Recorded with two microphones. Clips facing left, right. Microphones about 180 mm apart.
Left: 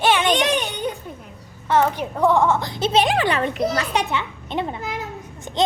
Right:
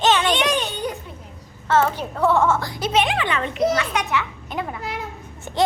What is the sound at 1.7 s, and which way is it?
A child's voice, 15° left (ahead or behind).